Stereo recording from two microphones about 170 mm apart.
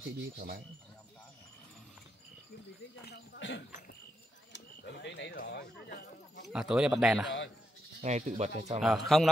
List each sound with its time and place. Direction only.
3.1 s speech: 90° left; by 6.4 s 65° left (ahead or behind)
6.5 s speech: 5° right (ahead or behind)
7.2 s speech: 90° left
8.0 s speech: 40° right (ahead or behind)
8.8 s speech: centre (ahead or behind)